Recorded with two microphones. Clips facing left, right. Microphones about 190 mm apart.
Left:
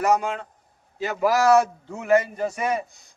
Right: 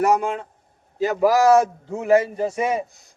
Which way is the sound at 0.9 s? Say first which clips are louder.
Right 4 dB; 40° right (ahead or behind).